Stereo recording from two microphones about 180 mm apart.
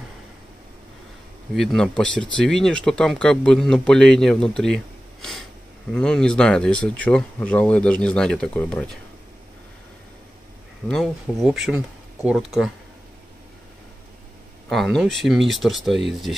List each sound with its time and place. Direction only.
1.5 s speech: centre (ahead or behind)
10.9 s speech: centre (ahead or behind)
14.7 s speech: centre (ahead or behind)